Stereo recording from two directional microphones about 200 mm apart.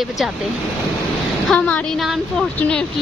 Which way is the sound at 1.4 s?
5° left (ahead or behind).